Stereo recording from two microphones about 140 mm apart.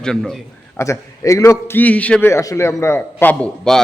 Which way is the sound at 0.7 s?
20° left (ahead or behind).